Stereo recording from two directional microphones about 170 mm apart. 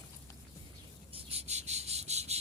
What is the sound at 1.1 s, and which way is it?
Cricket, 35° right (ahead or behind).